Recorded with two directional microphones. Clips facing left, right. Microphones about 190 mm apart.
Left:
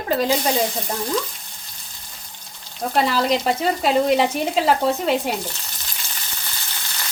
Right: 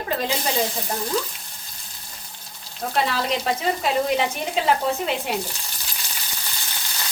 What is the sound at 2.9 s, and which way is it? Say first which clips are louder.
A woman's voice: left 4 dB; 35° left (ahead or behind).